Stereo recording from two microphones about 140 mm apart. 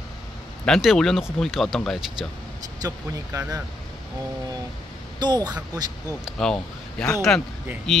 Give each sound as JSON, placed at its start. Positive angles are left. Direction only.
{"t": 0.7, "sound": "speech", "side_deg": 0}
{"t": 2.8, "sound": "speech", "side_deg": -25}
{"t": 5.2, "sound": "speech", "side_deg": -30}
{"t": 6.2, "sound": "speech", "side_deg": 5}